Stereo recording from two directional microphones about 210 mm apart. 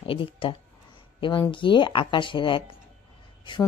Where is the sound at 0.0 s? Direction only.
25° left (ahead or behind).